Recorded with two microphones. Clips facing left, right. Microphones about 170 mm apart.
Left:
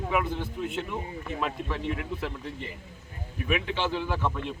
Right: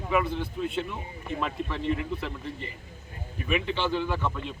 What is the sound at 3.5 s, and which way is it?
Speech, 5° left (ahead or behind).